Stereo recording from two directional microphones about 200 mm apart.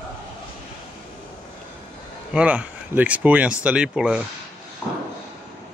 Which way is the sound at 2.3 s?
5° right (ahead or behind).